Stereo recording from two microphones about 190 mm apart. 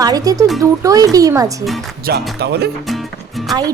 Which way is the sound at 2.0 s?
55° right (ahead or behind).